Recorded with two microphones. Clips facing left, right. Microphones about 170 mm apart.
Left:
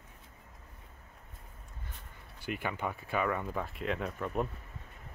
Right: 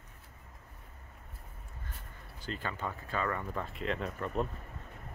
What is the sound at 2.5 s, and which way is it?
Speech, 15° left (ahead or behind).